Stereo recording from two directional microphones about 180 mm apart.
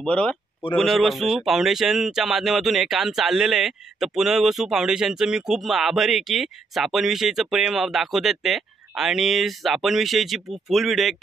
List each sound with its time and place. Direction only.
0.0 s speech: 5° left (ahead or behind)